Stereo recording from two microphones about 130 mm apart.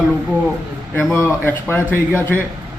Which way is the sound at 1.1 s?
15° left (ahead or behind).